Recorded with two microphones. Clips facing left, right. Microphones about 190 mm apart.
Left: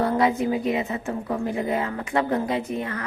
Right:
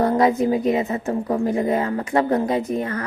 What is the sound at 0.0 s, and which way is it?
A woman's voice, 40° right (ahead or behind).